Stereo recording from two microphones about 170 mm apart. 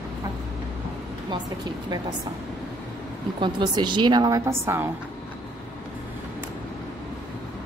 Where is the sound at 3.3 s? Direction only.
30° right (ahead or behind).